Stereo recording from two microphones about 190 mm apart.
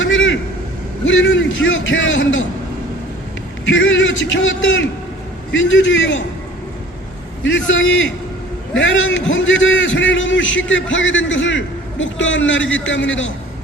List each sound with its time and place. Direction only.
0.0 s vehicle: 85° left
1.0 s a man's voice: 85° left
3.7 s a man's voice: 85° left
7.4 s a man's voice: 80° left